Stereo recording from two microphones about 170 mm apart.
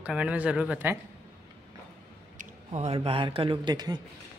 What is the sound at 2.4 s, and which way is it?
A man's voice, 40° right (ahead or behind).